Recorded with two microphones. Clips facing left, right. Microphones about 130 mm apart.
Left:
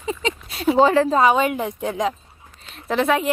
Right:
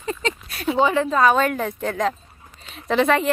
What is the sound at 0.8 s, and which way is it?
Speech, 35° left (ahead or behind).